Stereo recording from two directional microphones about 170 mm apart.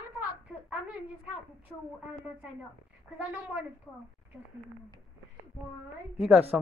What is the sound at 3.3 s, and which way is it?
Speech, 5° right (ahead or behind).